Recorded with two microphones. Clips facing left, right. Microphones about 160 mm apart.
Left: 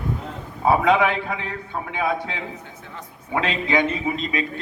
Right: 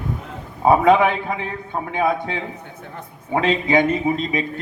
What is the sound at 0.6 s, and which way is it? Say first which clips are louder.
A man's voice: right 4 dB; 50° right (ahead or behind).